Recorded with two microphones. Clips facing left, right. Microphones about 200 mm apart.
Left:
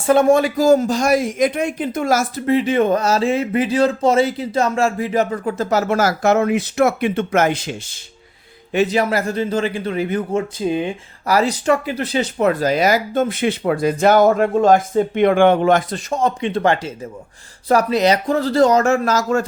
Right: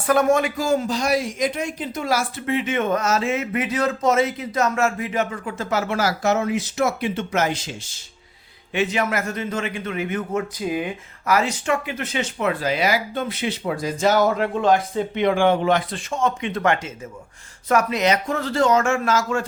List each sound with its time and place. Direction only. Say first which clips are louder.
0.0 s speech: left 5 dB; 25° left (ahead or behind); by 7.9 s 55° left (ahead or behind)
8.7 s speech: left 5 dB; 35° left (ahead or behind)